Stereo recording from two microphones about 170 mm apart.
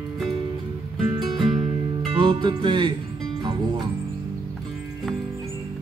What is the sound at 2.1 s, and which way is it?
Music, 30° right (ahead or behind).